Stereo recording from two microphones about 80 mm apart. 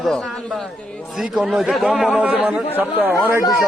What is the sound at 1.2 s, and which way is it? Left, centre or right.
Speech, centre.